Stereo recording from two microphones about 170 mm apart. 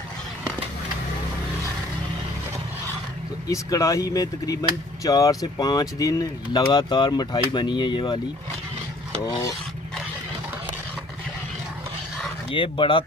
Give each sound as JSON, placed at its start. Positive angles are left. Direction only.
{"t": 3.4, "sound": "speech", "side_deg": 20}
{"t": 9.2, "sound": "speech", "side_deg": 20}
{"t": 12.4, "sound": "speech", "side_deg": 30}